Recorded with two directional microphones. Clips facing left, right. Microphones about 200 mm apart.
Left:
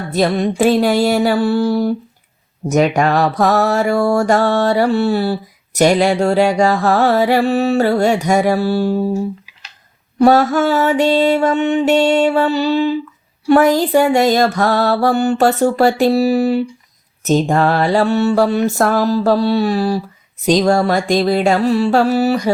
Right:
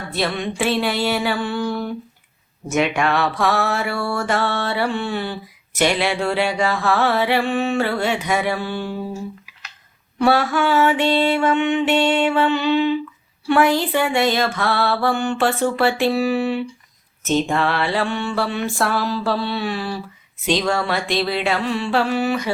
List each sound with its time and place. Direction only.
0.1 s mantra: 40° left (ahead or behind)
10.2 s mantra: 40° left (ahead or behind)